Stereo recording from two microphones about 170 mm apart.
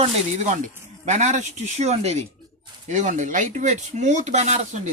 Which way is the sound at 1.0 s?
45° right (ahead or behind).